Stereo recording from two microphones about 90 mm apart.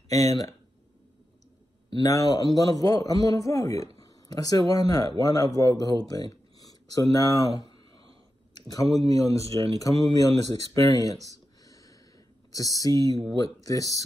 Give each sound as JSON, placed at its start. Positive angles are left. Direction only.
{"t": 0.1, "sound": "speech", "side_deg": 40}
{"t": 2.0, "sound": "speech", "side_deg": 40}
{"t": 8.5, "sound": "a sound", "side_deg": 45}
{"t": 9.1, "sound": "speech", "side_deg": 40}
{"t": 11.2, "sound": "a sound", "side_deg": 40}
{"t": 12.5, "sound": "speech", "side_deg": 40}